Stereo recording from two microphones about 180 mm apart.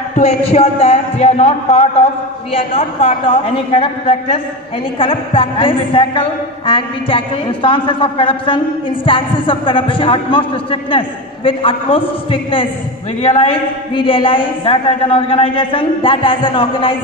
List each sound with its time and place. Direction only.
0.1 s a man's voice: 35° left (ahead or behind)